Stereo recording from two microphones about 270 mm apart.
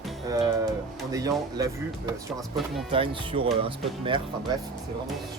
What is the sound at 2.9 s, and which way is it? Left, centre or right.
Speech, centre.